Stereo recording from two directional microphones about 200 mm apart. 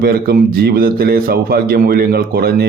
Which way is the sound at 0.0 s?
50° right (ahead or behind).